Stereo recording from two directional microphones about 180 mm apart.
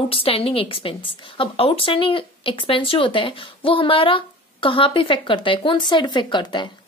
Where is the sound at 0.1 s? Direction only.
30° left (ahead or behind).